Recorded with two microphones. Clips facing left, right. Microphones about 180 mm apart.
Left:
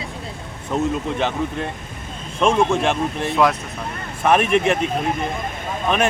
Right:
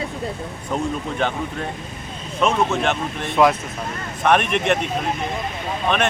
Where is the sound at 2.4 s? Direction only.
10° left (ahead or behind).